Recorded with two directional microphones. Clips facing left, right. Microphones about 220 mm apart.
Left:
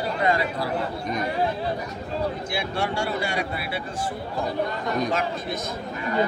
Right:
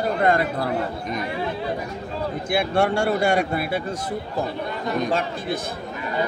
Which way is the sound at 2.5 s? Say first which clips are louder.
Right 7 dB; 55° right (ahead or behind).